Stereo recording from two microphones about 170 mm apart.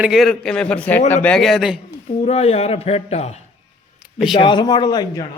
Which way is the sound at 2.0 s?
40° left (ahead or behind).